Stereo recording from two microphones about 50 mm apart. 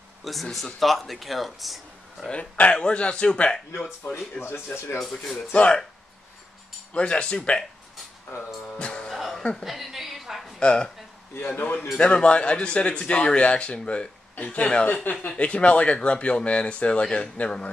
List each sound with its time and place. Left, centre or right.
0.2 s speech: centre
2.2 s speech: left
6.9 s speech: left
8.6 s music: left
9.1 s music: centre
9.6 s a sound: centre
10.6 s speech: centre
11.3 s a man's voice: left
12.0 s speech: left